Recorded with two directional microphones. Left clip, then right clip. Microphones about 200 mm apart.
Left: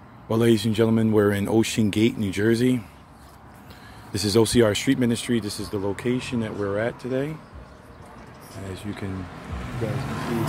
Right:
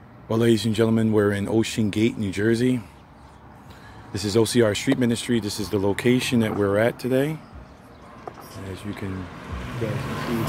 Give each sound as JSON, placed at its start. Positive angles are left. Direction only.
{"t": 0.3, "sound": "speech", "side_deg": 5}
{"t": 4.1, "sound": "speech", "side_deg": 10}
{"t": 5.6, "sound": "speech", "side_deg": -35}
{"t": 9.4, "sound": "vehicle", "side_deg": -25}